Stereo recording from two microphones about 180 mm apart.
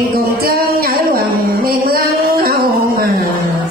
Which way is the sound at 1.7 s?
55° right (ahead or behind).